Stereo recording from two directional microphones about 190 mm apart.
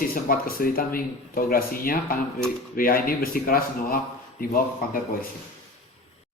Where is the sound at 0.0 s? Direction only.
50° left (ahead or behind).